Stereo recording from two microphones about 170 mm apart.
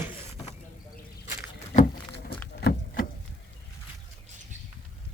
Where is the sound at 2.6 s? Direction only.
70° left (ahead or behind).